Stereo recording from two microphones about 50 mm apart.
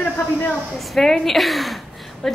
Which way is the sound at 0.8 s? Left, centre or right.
Centre.